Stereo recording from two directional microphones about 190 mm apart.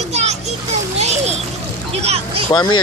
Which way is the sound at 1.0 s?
35° right (ahead or behind).